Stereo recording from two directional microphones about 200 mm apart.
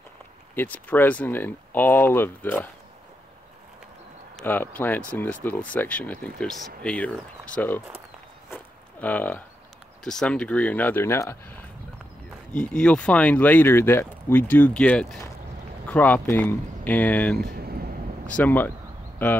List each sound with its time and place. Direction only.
0.6 s speech: 10° left (ahead or behind)
4.4 s speech: 10° left (ahead or behind)
8.5 s a sound: 10° left (ahead or behind)
10.0 s speech: 5° left (ahead or behind)
12.5 s speech: 5° left (ahead or behind)
17.4 s vehicle: 50° right (ahead or behind)
18.2 s speech: 10° left (ahead or behind)